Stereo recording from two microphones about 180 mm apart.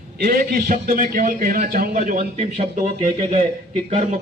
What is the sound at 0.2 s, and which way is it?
A man's voice, 55° right (ahead or behind).